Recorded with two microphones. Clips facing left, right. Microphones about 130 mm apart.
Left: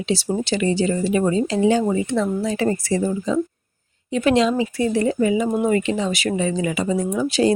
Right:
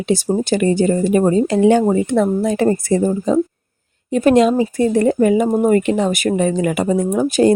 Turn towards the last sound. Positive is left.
turn(degrees=-50)  # may be behind; listen again after turning